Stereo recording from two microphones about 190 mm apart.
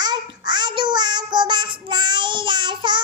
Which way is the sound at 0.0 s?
25° right (ahead or behind).